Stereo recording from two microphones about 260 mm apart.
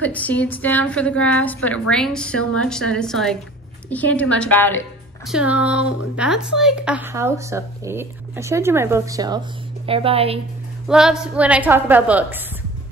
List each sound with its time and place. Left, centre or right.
0.0 s a woman's voice: centre; by 10.4 s right
10.9 s a woman's voice: centre